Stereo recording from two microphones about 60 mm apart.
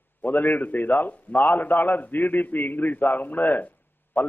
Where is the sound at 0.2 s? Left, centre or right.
Left.